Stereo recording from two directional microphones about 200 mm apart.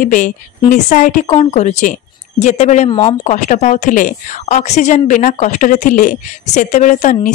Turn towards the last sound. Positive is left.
turn(degrees=35)  # may be behind; listen again after turning